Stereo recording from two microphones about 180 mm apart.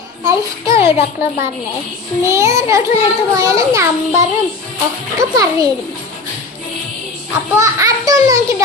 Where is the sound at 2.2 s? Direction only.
15° right (ahead or behind).